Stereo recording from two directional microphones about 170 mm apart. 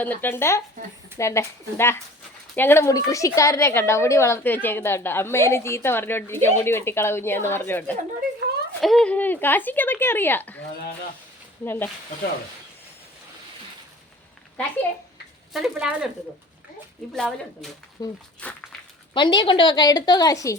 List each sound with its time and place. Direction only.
0.0 s a woman's voice: 10° left (ahead or behind)
11.6 s a woman's voice: 10° left (ahead or behind)
15.5 s speech: 5° right (ahead or behind)
17.2 s speech: centre (ahead or behind)
18.0 s a woman's voice: 20° left (ahead or behind)